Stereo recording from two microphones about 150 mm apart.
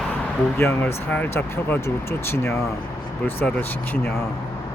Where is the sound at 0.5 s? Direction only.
15° left (ahead or behind).